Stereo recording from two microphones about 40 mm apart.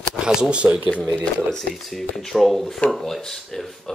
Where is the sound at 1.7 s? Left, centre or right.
Centre.